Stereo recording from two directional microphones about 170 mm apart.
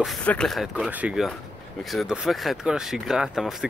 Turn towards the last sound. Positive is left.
turn(degrees=0)  # may be behind; listen again after turning